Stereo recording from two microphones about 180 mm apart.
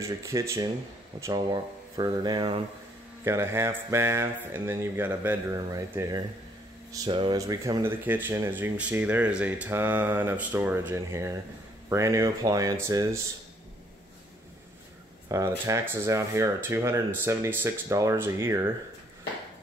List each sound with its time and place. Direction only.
0.0 s speech: 15° right (ahead or behind)
3.3 s speech: 15° right (ahead or behind)
15.2 s speech: 15° right (ahead or behind)